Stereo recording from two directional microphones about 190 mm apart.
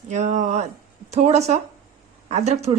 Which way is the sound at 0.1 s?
40° right (ahead or behind).